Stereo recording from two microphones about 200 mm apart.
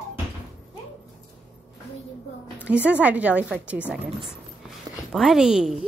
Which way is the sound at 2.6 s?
5° right (ahead or behind).